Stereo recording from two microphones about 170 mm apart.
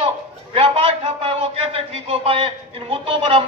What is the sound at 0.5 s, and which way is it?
A man's voice, 35° right (ahead or behind).